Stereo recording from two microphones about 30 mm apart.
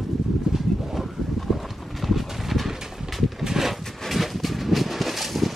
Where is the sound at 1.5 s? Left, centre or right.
Centre.